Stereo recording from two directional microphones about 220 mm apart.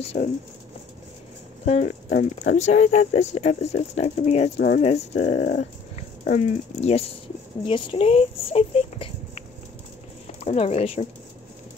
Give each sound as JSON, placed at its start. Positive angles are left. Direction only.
{"t": 0.0, "sound": "speech", "side_deg": 25}
{"t": 1.7, "sound": "speech", "side_deg": 35}
{"t": 10.4, "sound": "speech", "side_deg": 30}